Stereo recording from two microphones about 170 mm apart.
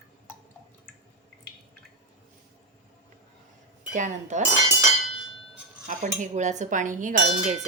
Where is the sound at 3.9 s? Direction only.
45° right (ahead or behind).